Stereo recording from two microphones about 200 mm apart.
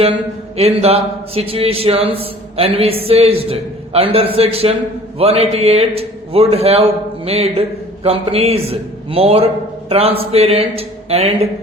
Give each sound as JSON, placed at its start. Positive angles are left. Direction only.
{"t": 0.5, "sound": "a man's voice", "side_deg": -30}